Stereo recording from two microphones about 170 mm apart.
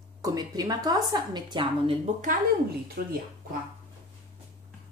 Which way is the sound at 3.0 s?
60° right (ahead or behind).